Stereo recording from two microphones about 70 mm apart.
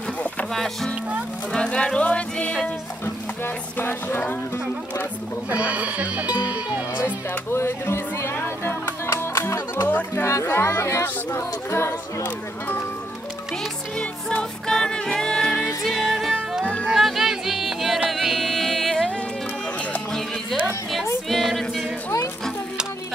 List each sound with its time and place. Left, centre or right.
1.5 s speech: centre
3.4 s speech: left
5.5 s speech: right
7.5 s music: left
9.8 s speech: left
10.2 s speech: left
12.2 s speech: left
13.9 s music: centre
15.8 s music: centre
20.6 s a sound: centre
21.3 s music: centre